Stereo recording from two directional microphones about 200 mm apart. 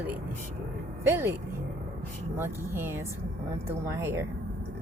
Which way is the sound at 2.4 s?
10° right (ahead or behind).